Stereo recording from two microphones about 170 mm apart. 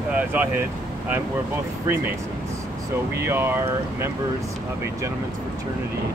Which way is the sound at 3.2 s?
15° right (ahead or behind).